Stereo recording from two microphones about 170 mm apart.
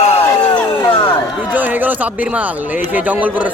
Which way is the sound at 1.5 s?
10° right (ahead or behind).